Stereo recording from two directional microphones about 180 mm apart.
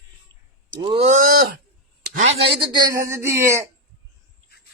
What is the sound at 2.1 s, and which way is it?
Speech, 40° right (ahead or behind).